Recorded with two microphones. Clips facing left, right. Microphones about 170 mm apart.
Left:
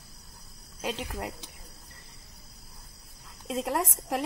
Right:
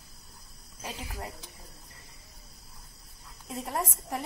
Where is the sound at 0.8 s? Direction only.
90° left.